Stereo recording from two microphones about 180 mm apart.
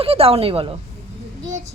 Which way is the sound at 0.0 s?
30° right (ahead or behind).